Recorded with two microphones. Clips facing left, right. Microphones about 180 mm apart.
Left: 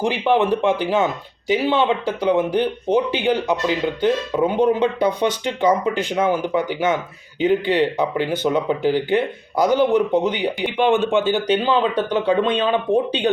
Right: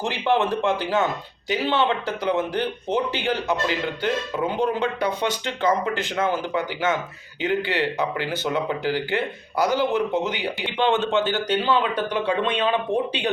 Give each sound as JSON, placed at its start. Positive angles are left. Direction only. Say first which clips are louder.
{"t": 0.0, "sound": "speech", "louder": "left 4 dB", "side_deg": 15}